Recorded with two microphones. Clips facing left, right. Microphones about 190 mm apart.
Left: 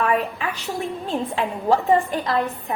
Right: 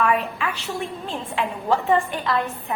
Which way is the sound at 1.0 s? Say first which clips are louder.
Left 5 dB; 40° left (ahead or behind).